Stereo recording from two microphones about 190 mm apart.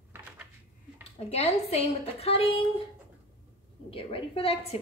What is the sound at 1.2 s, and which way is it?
A woman's voice, 35° left (ahead or behind).